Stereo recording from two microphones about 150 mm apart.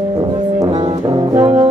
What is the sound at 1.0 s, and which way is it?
Brass instrument, 30° right (ahead or behind).